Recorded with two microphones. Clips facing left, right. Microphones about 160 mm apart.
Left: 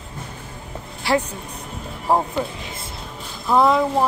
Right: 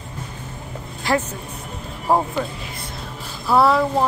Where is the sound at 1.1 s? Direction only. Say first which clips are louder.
Left 1 dB; 15° left (ahead or behind).